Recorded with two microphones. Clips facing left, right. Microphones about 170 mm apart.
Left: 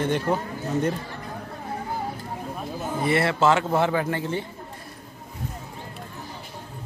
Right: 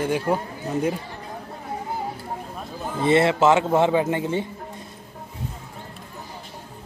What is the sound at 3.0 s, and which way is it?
A man's voice, 20° right (ahead or behind).